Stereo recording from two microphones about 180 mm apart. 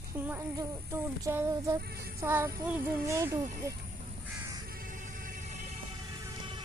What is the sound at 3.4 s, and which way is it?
Speech, 45° right (ahead or behind).